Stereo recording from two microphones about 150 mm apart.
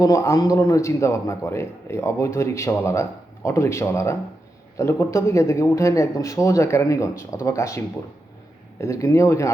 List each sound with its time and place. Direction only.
0.0 s a man's voice: 20° left (ahead or behind)
8.8 s a man's voice: 20° left (ahead or behind)